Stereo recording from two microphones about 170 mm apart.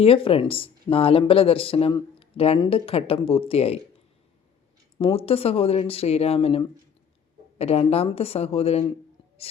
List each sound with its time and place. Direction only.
0.0 s speech: 35° left (ahead or behind)
4.9 s speech: 35° left (ahead or behind)